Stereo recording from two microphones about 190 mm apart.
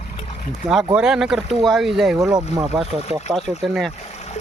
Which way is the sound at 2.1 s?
20° right (ahead or behind).